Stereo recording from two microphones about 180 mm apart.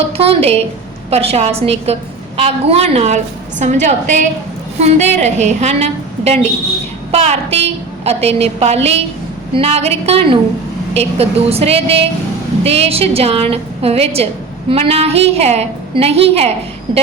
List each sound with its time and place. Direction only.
0.2 s a woman's voice: 30° right (ahead or behind)